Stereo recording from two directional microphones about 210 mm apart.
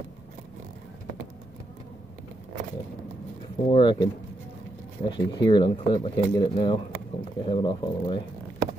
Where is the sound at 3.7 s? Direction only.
20° left (ahead or behind).